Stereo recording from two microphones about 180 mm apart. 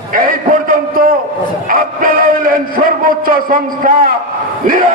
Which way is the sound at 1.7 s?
50° right (ahead or behind).